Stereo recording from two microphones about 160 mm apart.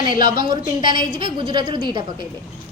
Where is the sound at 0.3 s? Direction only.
30° right (ahead or behind).